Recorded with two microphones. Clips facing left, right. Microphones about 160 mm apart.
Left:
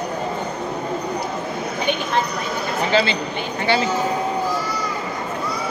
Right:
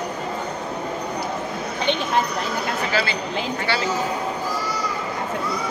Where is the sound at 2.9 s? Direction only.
25° left (ahead or behind).